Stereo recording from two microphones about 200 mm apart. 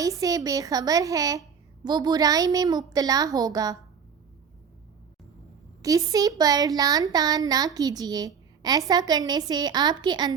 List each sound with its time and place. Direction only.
0.0 s a woman's voice: 15° right (ahead or behind)
5.8 s speech: 15° right (ahead or behind)